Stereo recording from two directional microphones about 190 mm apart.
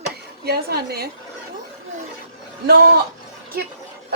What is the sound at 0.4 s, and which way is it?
Speech, 55° right (ahead or behind).